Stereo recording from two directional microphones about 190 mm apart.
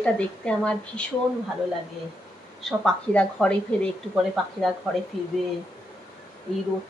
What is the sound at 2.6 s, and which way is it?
A woman's voice, 5° left (ahead or behind).